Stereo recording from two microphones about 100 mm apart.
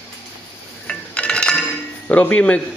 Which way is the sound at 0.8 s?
10° left (ahead or behind).